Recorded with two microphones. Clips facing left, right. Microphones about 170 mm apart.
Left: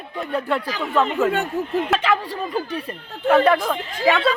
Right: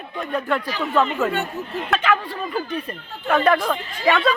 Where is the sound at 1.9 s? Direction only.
30° left (ahead or behind).